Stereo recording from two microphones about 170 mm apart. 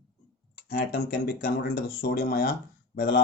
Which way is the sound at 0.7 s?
65° left (ahead or behind).